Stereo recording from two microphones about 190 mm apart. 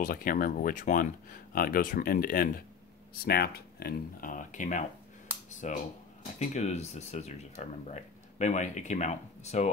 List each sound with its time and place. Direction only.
0.0 s speech: 50° left (ahead or behind)